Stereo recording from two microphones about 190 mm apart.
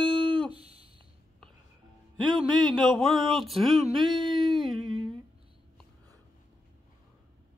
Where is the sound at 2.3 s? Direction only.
25° right (ahead or behind).